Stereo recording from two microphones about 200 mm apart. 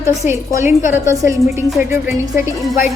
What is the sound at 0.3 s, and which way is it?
A woman's voice, 10° right (ahead or behind).